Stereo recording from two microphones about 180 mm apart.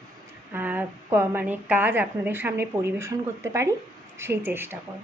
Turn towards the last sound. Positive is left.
turn(degrees=-10)  # may be behind; listen again after turning